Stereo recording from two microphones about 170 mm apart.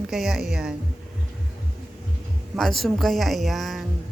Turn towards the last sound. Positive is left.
turn(degrees=0)  # may be behind; listen again after turning